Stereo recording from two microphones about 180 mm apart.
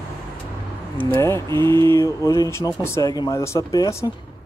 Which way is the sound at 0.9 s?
10° left (ahead or behind).